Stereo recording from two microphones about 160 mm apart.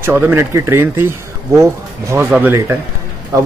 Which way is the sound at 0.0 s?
15° right (ahead or behind).